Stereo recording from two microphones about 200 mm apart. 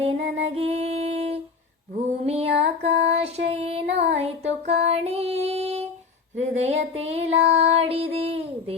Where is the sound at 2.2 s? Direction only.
30° right (ahead or behind).